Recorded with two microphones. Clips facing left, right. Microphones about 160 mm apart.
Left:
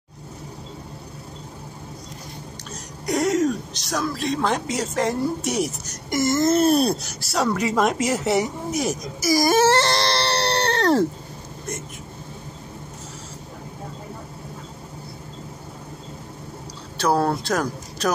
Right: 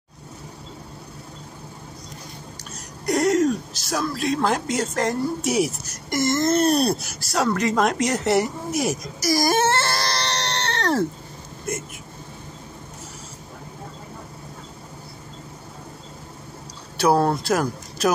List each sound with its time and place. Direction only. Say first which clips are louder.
3.1 s speech: right 1 dB; centre (ahead or behind)
10.0 s a sound: left 4 dB; 30° left (ahead or behind)
16.9 s speech: right 2 dB; 10° right (ahead or behind)